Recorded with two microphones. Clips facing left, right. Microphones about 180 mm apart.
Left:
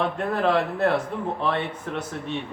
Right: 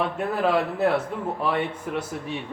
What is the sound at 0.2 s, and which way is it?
Speech, 5° right (ahead or behind).